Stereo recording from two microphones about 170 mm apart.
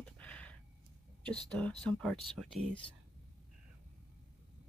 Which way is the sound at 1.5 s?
5° left (ahead or behind).